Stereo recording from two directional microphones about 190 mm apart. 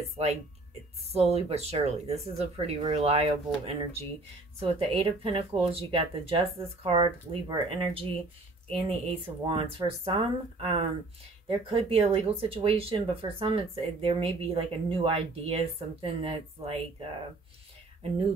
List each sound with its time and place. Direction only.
1.1 s speech: 35° right (ahead or behind)
11.4 s speech: 30° right (ahead or behind)